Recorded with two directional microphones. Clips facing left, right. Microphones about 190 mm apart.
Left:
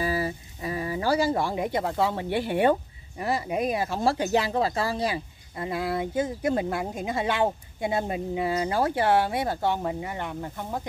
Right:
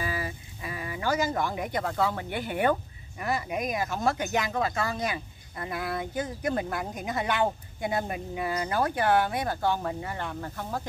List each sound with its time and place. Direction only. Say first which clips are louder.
0.0 s speech: left 6 dB; 35° left (ahead or behind); by 10.9 s 15° left (ahead or behind)